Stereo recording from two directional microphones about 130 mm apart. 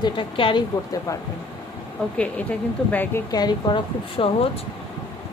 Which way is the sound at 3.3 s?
30° left (ahead or behind).